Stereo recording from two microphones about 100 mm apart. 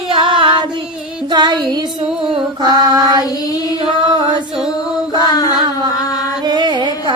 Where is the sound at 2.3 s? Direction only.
50° right (ahead or behind).